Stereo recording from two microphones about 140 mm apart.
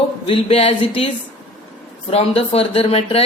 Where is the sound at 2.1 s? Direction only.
45° left (ahead or behind).